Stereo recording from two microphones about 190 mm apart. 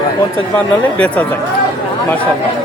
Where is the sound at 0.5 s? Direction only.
5° left (ahead or behind).